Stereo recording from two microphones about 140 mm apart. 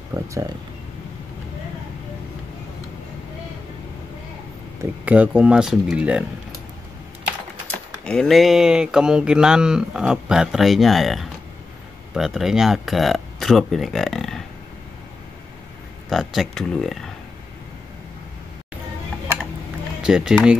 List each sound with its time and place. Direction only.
0.1 s speech: 20° right (ahead or behind)
5.0 s speech: 10° right (ahead or behind)
8.0 s speech: 5° left (ahead or behind)
16.1 s speech: centre (ahead or behind)
20.0 s speech: 5° right (ahead or behind)